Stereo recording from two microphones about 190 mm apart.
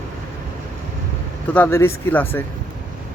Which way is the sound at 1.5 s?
10° left (ahead or behind).